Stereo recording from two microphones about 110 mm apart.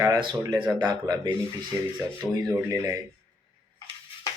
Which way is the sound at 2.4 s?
30° right (ahead or behind).